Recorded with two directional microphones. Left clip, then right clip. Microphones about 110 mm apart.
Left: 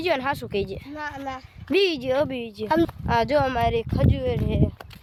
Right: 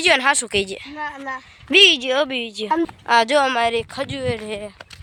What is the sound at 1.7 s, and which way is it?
Speech, 10° left (ahead or behind).